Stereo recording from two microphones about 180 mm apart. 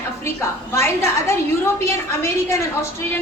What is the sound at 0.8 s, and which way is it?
A woman's voice, 15° left (ahead or behind).